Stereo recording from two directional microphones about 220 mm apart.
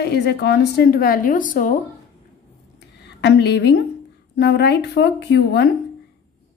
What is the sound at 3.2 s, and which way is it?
A woman's voice, 50° left (ahead or behind).